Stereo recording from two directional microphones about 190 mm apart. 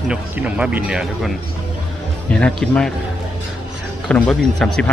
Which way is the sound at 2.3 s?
5° left (ahead or behind).